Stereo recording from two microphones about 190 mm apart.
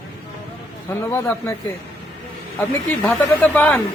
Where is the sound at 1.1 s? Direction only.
10° left (ahead or behind).